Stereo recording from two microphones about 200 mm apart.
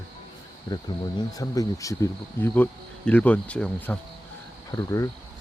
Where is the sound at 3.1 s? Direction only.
5° left (ahead or behind).